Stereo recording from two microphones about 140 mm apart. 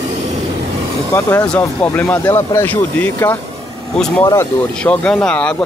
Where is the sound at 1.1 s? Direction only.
15° left (ahead or behind).